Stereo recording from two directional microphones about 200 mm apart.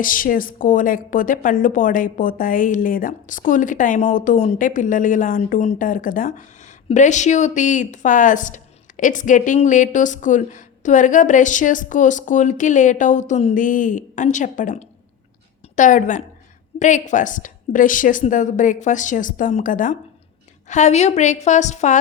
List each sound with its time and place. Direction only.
0.0 s a woman's voice: 45° left (ahead or behind)